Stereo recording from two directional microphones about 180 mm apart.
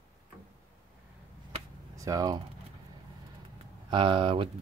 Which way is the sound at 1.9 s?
20° right (ahead or behind).